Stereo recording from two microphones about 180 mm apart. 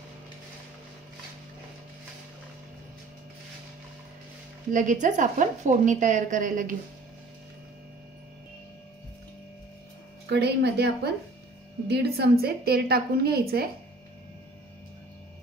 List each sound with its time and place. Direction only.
4.6 s a woman's voice: 45° right (ahead or behind)
10.2 s a woman's voice: 70° right (ahead or behind)
12.2 s a woman's voice: 60° right (ahead or behind)